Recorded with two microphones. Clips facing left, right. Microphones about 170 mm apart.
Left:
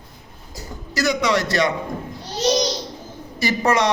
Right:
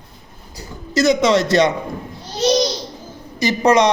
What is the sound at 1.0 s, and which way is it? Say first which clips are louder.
Speech: right 6 dB; 20° right (ahead or behind).